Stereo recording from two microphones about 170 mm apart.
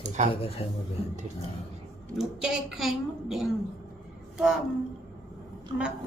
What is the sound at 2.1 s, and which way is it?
A woman's voice, 5° right (ahead or behind).